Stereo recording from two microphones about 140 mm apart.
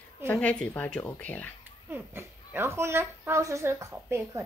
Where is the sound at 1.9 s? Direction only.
15° right (ahead or behind).